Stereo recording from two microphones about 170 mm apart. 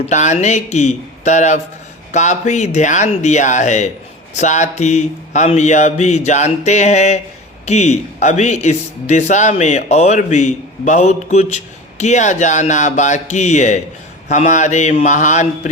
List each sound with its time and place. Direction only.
0.0 s speech: 45° left (ahead or behind)